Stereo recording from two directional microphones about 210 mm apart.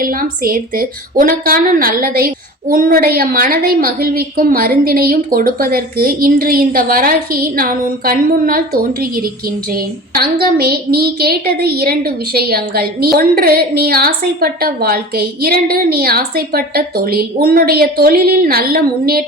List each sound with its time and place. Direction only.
0.0 s a woman's voice: 45° right (ahead or behind)